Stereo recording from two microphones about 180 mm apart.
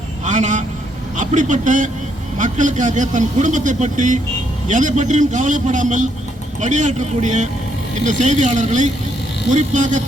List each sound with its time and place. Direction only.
0.3 s a man's voice: 45° right (ahead or behind)